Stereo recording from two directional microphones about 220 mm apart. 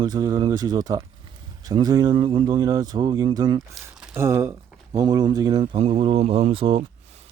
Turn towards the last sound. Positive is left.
turn(degrees=-25)  # may be behind; listen again after turning